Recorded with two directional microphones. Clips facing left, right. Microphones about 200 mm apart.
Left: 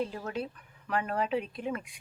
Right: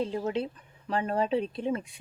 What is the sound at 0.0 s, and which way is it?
Speech, 20° right (ahead or behind).